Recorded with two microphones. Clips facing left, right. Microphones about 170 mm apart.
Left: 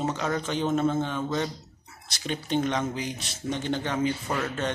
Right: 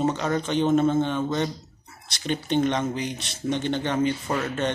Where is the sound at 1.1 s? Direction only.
5° left (ahead or behind).